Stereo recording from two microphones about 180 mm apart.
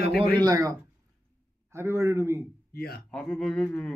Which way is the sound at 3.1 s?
5° left (ahead or behind).